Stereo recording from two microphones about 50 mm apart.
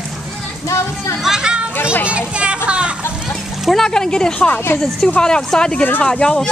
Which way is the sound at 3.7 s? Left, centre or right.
Centre.